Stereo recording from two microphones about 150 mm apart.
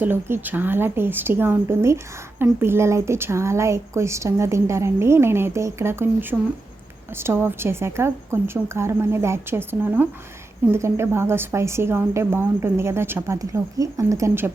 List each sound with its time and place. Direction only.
0.0 s speech: 10° right (ahead or behind)